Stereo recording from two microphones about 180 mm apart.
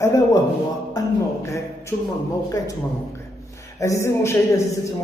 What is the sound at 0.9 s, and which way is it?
A man's voice, 15° left (ahead or behind).